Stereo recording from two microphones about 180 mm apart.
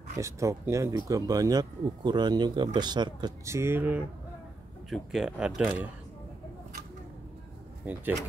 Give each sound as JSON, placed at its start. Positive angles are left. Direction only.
{"t": 0.2, "sound": "speech", "side_deg": -15}
{"t": 4.8, "sound": "speech", "side_deg": 0}
{"t": 7.8, "sound": "speech", "side_deg": -10}